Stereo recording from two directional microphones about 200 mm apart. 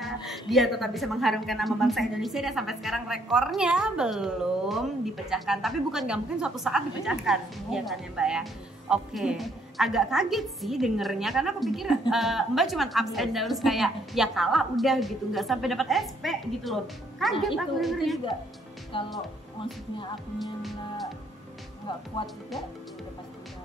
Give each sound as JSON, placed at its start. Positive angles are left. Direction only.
{"t": 0.0, "sound": "a woman's voice", "side_deg": 0}
{"t": 18.9, "sound": "speech", "side_deg": 25}
{"t": 20.3, "sound": "a woman's voice", "side_deg": 0}
{"t": 22.2, "sound": "speech", "side_deg": 25}